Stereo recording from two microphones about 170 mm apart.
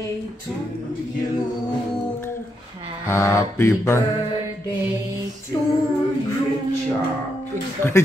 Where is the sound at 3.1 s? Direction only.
15° left (ahead or behind).